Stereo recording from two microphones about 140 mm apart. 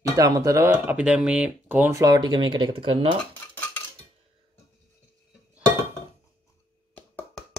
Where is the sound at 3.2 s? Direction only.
10° left (ahead or behind).